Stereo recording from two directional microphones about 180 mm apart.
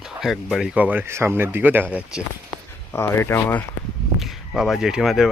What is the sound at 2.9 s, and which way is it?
Speech, 10° left (ahead or behind).